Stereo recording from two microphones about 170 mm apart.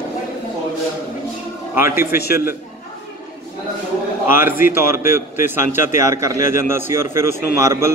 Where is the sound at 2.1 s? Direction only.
65° left (ahead or behind).